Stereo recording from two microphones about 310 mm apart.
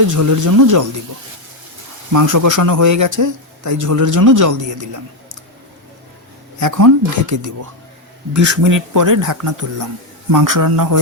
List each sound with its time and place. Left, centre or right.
0.1 s a man's voice: right
2.1 s a man's voice: right
6.6 s a man's voice: right